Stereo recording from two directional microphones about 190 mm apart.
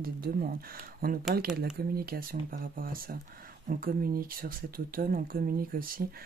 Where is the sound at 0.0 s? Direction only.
50° right (ahead or behind).